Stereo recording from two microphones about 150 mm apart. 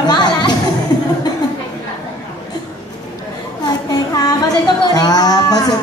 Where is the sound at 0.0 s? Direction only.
30° left (ahead or behind).